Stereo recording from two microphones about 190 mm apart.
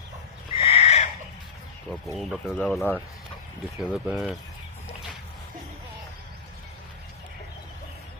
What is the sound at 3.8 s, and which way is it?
Speech, 5° right (ahead or behind).